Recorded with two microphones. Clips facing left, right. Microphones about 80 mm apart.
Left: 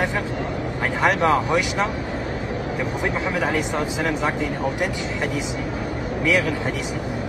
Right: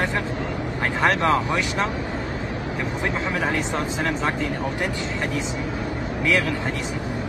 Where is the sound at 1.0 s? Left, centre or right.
Centre.